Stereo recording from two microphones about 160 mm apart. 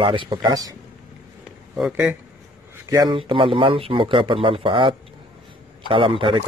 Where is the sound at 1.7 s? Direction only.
5° right (ahead or behind).